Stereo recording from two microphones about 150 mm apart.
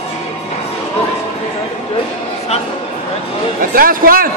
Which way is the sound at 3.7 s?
75° right (ahead or behind).